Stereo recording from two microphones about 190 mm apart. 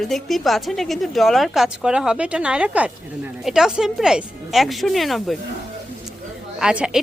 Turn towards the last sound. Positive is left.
turn(degrees=-5)  # may be behind; listen again after turning